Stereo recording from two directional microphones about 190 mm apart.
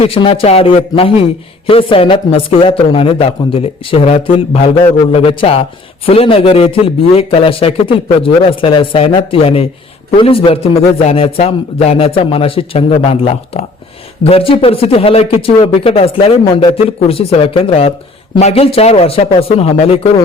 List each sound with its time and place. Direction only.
0.0 s speech: 30° left (ahead or behind)